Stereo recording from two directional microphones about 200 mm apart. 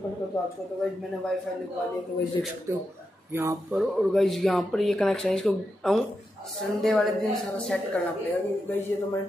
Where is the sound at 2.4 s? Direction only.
15° left (ahead or behind).